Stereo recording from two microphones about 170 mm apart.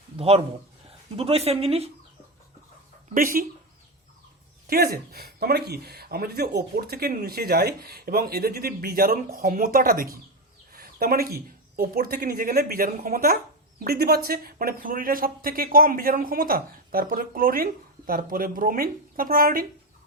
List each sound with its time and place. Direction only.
0.2 s speech: 35° right (ahead or behind)
3.2 s speech: 55° right (ahead or behind)
4.7 s speech: 65° right (ahead or behind)
10.7 s a sound: 60° right (ahead or behind)
11.8 s speech: 60° right (ahead or behind)